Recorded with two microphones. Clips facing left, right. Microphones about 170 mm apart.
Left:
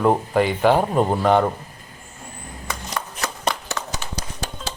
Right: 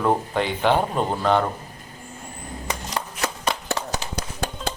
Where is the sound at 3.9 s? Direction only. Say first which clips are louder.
Right 2 dB; 55° right (ahead or behind).